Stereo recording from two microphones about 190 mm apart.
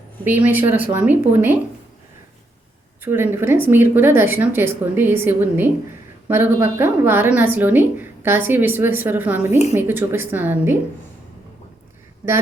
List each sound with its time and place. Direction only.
0.3 s a woman's voice: 10° right (ahead or behind)
3.0 s a woman's voice: 10° right (ahead or behind)